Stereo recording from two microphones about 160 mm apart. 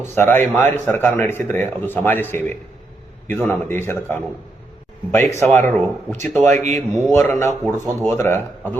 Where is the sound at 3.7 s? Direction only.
15° left (ahead or behind).